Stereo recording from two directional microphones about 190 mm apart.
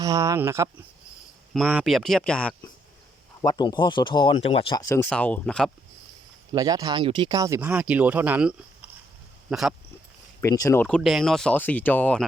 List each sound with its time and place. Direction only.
0.0 s speech: 15° right (ahead or behind)
1.5 s speech: centre (ahead or behind)
3.4 s speech: 20° left (ahead or behind)
5.0 s speech: 5° left (ahead or behind)
6.5 s speech: 20° right (ahead or behind); by 9.7 s centre (ahead or behind)
10.4 s speech: 15° left (ahead or behind)